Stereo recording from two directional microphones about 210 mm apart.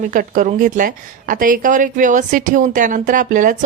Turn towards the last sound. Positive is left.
turn(degrees=-40)  # may be behind; listen again after turning